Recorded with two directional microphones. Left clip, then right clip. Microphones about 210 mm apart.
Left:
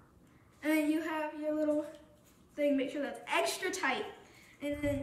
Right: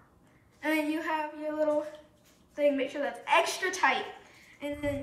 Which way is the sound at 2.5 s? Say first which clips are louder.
Right 4 dB; 10° left (ahead or behind).